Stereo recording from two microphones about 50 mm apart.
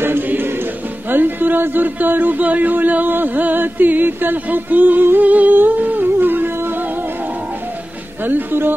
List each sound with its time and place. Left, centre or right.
0.0 s music: right
1.1 s a sound: right
8.3 s speech: right